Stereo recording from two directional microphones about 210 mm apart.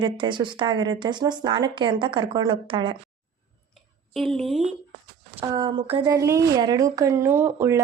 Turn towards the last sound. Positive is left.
turn(degrees=-10)  # may be behind; listen again after turning